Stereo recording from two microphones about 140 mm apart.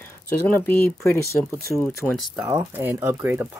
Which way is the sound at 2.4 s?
15° right (ahead or behind).